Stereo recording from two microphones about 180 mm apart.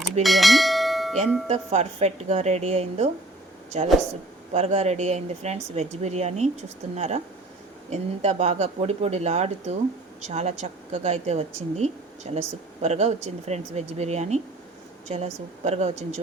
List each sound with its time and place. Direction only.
0.0 s speech: centre (ahead or behind)
1.5 s a woman's voice: 35° right (ahead or behind)